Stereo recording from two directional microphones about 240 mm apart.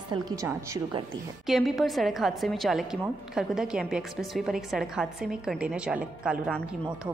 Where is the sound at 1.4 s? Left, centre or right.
Centre.